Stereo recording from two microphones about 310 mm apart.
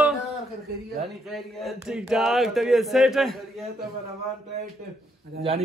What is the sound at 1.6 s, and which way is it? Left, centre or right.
Speech, centre.